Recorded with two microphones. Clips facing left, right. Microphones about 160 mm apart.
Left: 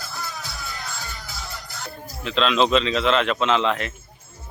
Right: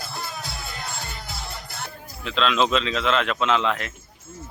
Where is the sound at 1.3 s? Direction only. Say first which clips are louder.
Right 1 dB; 55° right (ahead or behind).